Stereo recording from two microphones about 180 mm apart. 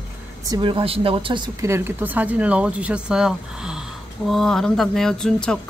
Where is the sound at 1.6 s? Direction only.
15° right (ahead or behind).